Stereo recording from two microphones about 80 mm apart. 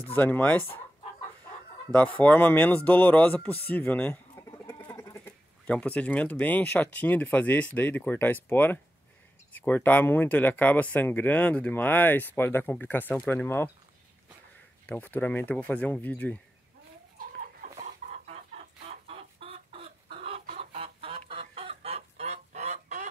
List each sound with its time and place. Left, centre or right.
0.1 s speech: left
1.9 s speech: centre
4.1 s bird: left
4.9 s goat: left
5.2 s speech: centre
14.9 s speech: left